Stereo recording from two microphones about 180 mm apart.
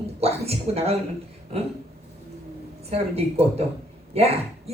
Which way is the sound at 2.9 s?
35° right (ahead or behind).